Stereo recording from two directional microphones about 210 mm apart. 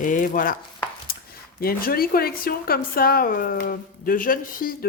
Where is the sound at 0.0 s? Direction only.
40° left (ahead or behind).